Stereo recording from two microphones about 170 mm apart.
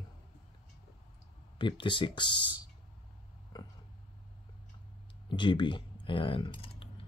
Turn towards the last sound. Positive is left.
turn(degrees=30)  # may be behind; listen again after turning